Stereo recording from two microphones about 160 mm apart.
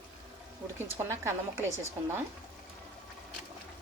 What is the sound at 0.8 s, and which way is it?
A woman's voice, 15° right (ahead or behind).